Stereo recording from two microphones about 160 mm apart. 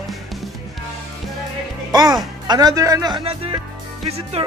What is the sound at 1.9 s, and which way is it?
Speech, 25° right (ahead or behind).